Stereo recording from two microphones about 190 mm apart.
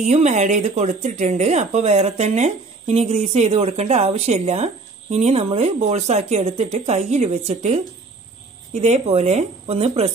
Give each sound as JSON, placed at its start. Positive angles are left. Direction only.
{"t": 0.0, "sound": "speech", "side_deg": -35}